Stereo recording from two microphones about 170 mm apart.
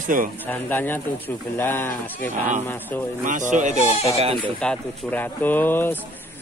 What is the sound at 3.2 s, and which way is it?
Speech, 50° right (ahead or behind).